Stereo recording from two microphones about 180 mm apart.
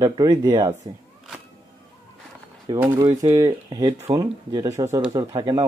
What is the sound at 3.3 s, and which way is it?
Speech, 20° right (ahead or behind).